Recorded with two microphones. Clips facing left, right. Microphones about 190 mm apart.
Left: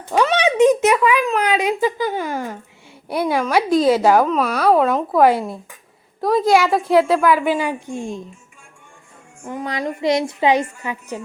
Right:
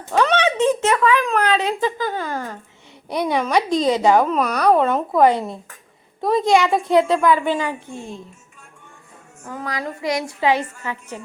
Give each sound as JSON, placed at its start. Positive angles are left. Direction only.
{"t": 0.1, "sound": "a child's voice", "side_deg": 10}
{"t": 9.4, "sound": "a woman's voice", "side_deg": 15}